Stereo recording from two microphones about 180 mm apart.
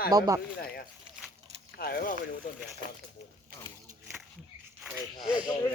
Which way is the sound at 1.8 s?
55° left (ahead or behind).